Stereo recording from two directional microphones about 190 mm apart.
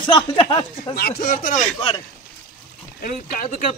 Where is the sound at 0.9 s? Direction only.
55° left (ahead or behind).